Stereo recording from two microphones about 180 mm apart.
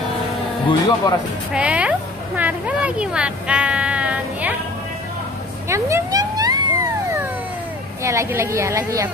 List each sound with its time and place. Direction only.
0.7 s speech: 25° left (ahead or behind)
1.5 s a woman's voice: 5° right (ahead or behind)
5.7 s a sound: 15° right (ahead or behind)
8.0 s speech: 15° right (ahead or behind)